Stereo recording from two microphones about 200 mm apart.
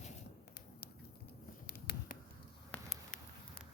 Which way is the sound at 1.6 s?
55° left (ahead or behind).